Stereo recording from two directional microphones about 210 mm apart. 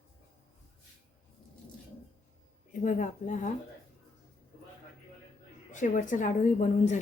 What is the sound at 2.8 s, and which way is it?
Speech, 35° left (ahead or behind).